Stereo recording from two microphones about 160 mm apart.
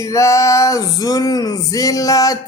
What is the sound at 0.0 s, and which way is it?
Music, 20° left (ahead or behind).